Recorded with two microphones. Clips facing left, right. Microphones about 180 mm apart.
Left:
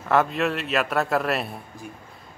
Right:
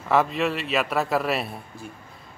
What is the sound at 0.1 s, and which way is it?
Speech, centre (ahead or behind).